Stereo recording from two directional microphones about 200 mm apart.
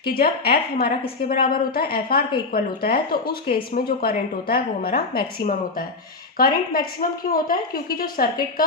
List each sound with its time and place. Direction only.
0.0 s speech: 50° left (ahead or behind)